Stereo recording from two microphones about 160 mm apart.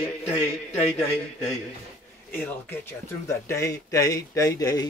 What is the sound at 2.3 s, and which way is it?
Speech, 10° left (ahead or behind).